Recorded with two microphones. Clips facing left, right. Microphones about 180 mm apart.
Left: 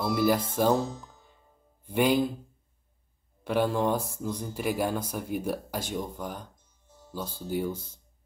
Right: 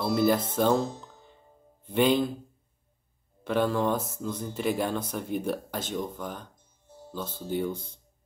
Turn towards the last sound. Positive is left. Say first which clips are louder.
# right 1 dB
turn(degrees=10)  # may be behind; listen again after turning